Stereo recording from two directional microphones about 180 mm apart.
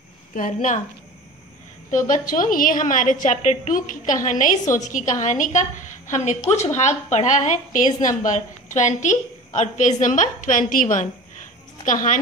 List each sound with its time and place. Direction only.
0.3 s a woman's voice: 45° left (ahead or behind)
1.9 s a woman's voice: 45° left (ahead or behind)